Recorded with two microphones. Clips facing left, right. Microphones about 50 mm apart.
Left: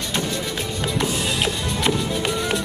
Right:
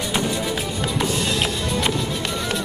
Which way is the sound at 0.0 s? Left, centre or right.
Centre.